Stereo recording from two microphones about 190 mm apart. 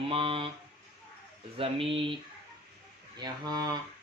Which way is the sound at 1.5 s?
30° right (ahead or behind).